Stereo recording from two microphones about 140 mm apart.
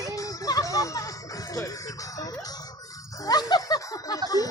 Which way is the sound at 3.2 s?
30° left (ahead or behind).